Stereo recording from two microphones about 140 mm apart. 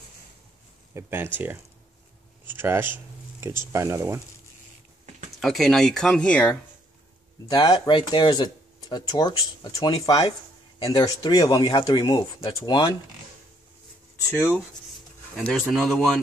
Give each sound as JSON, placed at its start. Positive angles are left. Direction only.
{"t": 0.9, "sound": "speech", "side_deg": -15}
{"t": 5.4, "sound": "speech", "side_deg": 0}
{"t": 7.4, "sound": "speech", "side_deg": 30}
{"t": 15.3, "sound": "speech", "side_deg": 10}